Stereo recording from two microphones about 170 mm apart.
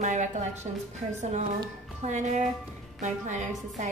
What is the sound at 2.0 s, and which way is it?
A woman's voice, 45° right (ahead or behind).